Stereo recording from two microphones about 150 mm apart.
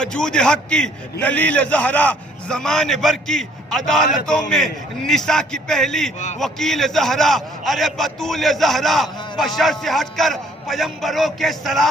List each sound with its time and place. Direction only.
0.0 s a man's voice: 5° left (ahead or behind)
6.1 s a man's voice: 50° left (ahead or behind)
6.4 s a man's voice: centre (ahead or behind)